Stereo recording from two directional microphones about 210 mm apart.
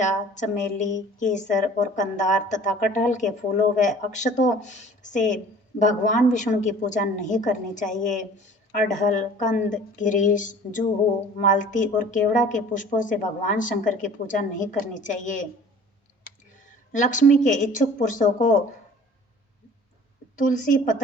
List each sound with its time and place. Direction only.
0.0 s speech: 35° left (ahead or behind)
16.9 s speech: 35° left (ahead or behind)
20.3 s speech: 35° left (ahead or behind)